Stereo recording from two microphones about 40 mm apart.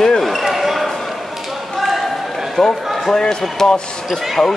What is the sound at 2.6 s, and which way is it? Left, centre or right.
Speech, centre.